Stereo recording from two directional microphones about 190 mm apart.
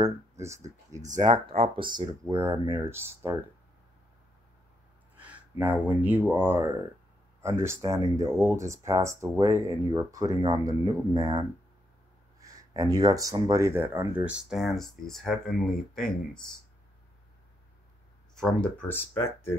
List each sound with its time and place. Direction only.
0.0 s speech: 15° right (ahead or behind)
1.2 s speech: 30° right (ahead or behind)
5.1 s speech: 5° right (ahead or behind)
18.4 s speech: 5° left (ahead or behind)